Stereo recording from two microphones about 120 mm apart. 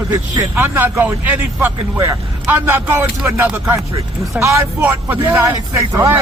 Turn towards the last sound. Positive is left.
turn(degrees=-25)  # may be behind; listen again after turning